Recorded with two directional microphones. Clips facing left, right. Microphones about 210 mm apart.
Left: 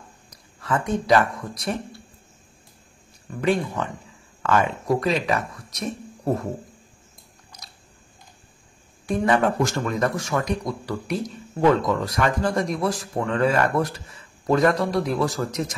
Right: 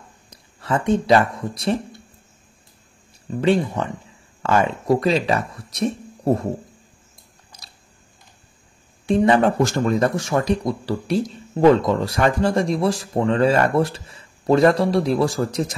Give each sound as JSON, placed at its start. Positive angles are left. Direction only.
{"t": 0.3, "sound": "speech", "side_deg": -25}
{"t": 3.3, "sound": "speech", "side_deg": -25}
{"t": 7.5, "sound": "biting", "side_deg": -30}
{"t": 9.0, "sound": "speech", "side_deg": -25}